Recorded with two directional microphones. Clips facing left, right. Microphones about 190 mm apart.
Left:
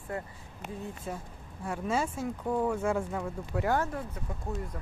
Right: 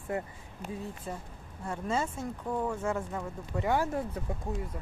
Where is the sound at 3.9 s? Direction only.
30° right (ahead or behind).